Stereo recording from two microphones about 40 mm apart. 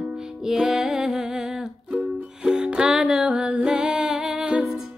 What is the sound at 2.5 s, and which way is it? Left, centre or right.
Music, centre.